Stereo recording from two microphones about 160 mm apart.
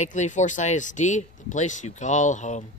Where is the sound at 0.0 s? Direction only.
50° left (ahead or behind).